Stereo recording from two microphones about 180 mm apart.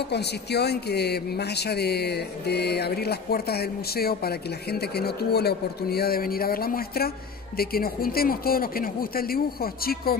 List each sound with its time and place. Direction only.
0.1 s speech: 65° left (ahead or behind)